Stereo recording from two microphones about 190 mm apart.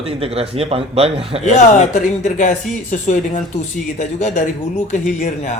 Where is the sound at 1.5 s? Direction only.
40° left (ahead or behind).